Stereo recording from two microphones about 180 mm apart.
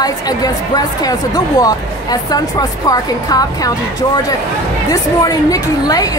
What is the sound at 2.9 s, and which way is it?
A woman's voice, 20° left (ahead or behind).